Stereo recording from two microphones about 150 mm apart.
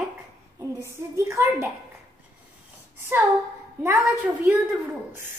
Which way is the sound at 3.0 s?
15° right (ahead or behind).